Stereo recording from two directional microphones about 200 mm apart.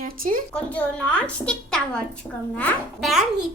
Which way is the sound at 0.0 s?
45° right (ahead or behind).